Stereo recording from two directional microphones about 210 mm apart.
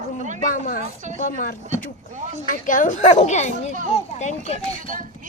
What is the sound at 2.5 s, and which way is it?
Speech, 40° left (ahead or behind).